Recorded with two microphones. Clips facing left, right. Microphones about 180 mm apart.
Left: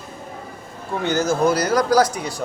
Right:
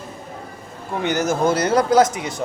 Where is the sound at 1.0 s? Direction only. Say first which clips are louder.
Left 1 dB; 20° right (ahead or behind).